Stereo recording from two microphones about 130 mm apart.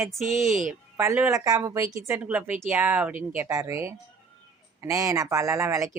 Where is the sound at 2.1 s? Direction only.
10° right (ahead or behind).